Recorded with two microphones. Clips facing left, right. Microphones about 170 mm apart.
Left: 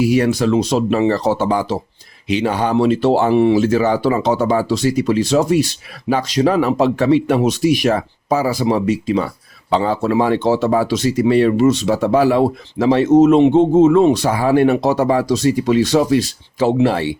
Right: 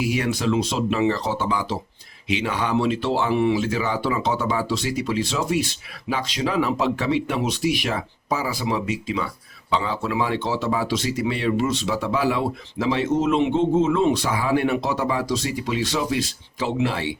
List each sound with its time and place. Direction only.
0.0 s speech: 40° left (ahead or behind)